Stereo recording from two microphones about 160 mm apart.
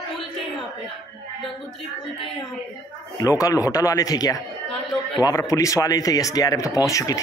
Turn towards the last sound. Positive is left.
turn(degrees=20)  # may be behind; listen again after turning